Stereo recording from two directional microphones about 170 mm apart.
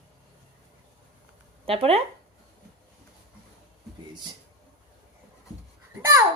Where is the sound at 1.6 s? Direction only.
35° right (ahead or behind).